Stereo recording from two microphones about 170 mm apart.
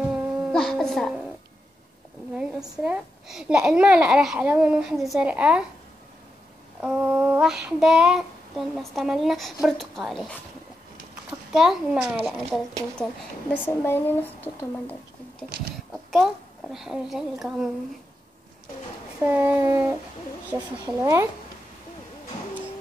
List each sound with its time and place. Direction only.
0.0 s music: 5° right (ahead or behind)
2.3 s child singing: 5° right (ahead or behind)
6.8 s child singing: 5° right (ahead or behind)
11.2 s a child's voice: 5° right (ahead or behind)
12.3 s child singing: centre (ahead or behind)
13.7 s speech: 10° left (ahead or behind)
15.9 s a sound: centre (ahead or behind)
16.7 s child singing: 5° right (ahead or behind)
19.2 s child singing: 10° right (ahead or behind)